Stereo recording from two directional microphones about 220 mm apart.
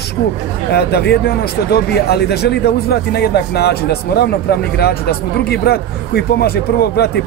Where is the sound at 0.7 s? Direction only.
50° left (ahead or behind).